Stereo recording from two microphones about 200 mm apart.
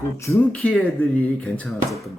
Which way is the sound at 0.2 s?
15° left (ahead or behind).